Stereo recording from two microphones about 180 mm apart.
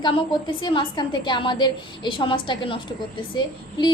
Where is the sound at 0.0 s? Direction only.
25° left (ahead or behind).